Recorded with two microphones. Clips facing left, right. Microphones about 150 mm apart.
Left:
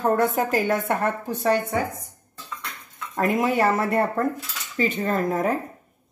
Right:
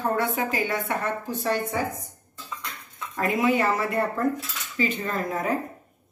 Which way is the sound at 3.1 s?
45° left (ahead or behind).